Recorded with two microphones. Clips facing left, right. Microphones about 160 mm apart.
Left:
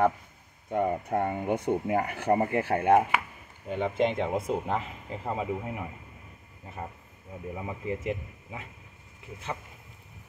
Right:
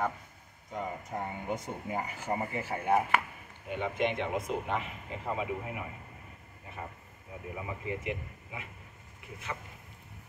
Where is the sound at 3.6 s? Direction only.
30° left (ahead or behind).